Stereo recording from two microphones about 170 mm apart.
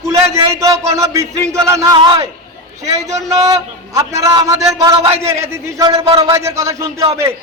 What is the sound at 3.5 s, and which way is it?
A man's voice, 20° right (ahead or behind).